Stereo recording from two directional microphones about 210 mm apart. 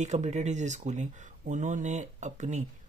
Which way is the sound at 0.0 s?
35° right (ahead or behind).